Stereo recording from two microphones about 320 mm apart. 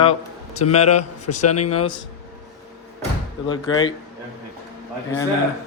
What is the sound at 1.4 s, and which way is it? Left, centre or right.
Speech, left.